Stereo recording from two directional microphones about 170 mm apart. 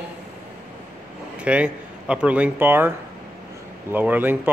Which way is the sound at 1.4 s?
5° right (ahead or behind).